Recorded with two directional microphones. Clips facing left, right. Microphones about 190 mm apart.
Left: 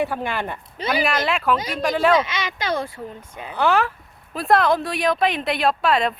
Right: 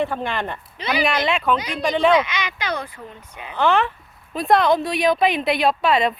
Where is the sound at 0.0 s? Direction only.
10° left (ahead or behind).